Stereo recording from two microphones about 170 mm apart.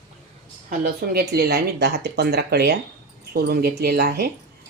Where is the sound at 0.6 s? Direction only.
65° right (ahead or behind).